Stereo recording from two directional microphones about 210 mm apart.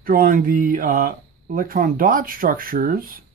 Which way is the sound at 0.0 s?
40° right (ahead or behind).